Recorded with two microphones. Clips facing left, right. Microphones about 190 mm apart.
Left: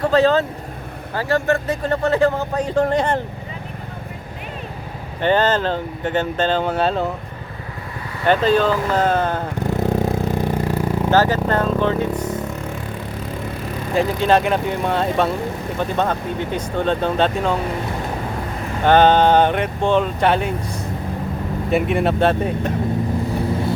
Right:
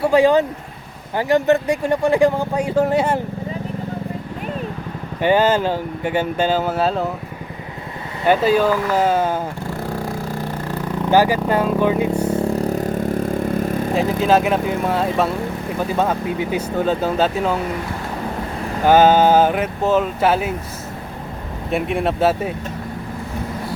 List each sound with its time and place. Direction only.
0.0 s speech: 10° right (ahead or behind)
5.2 s speech: 10° right (ahead or behind)
8.3 s speech: 10° right (ahead or behind)
9.6 s vehicle: 20° left (ahead or behind)
11.1 s vehicle: 10° right (ahead or behind)
12.4 s vehicle: 35° right (ahead or behind)
13.9 s speech: centre (ahead or behind)
18.9 s speech: 5° right (ahead or behind)
21.7 s speech: centre (ahead or behind)